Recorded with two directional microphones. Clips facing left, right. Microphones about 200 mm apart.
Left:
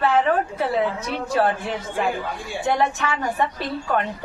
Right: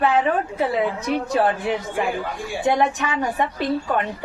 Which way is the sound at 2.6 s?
15° right (ahead or behind).